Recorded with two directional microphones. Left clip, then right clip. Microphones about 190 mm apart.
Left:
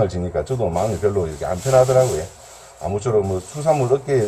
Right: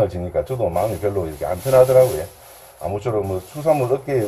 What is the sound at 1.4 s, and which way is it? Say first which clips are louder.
Speech: right 2 dB; 15° right (ahead or behind).